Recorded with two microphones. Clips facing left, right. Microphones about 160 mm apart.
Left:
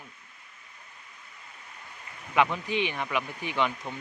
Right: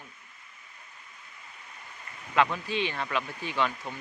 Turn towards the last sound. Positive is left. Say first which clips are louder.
# left 1 dB
turn(degrees=20)  # may be behind; listen again after turning